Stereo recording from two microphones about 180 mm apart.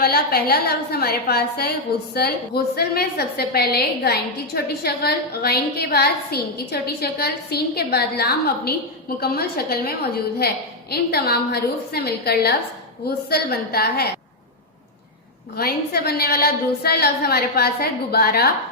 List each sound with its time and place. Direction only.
0.0 s a woman's voice: 60° left (ahead or behind)
15.5 s a woman's voice: 60° left (ahead or behind)